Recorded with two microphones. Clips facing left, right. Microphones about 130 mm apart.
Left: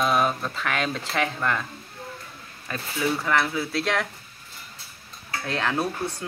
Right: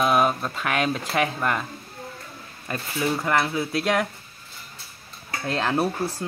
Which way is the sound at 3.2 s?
15° right (ahead or behind).